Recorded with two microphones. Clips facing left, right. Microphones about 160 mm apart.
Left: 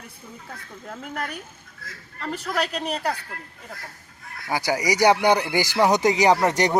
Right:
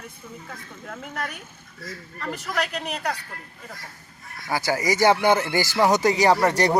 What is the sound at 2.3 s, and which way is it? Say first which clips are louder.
Speech: left 2 dB; 30° left (ahead or behind).